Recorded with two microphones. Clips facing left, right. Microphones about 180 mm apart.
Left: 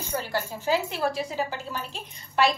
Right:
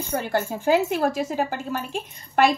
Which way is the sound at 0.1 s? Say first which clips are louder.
Right 5 dB; 55° right (ahead or behind).